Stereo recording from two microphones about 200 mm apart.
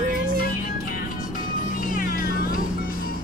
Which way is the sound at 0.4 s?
45° left (ahead or behind).